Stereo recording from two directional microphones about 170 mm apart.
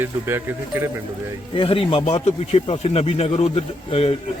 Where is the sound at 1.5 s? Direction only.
30° left (ahead or behind).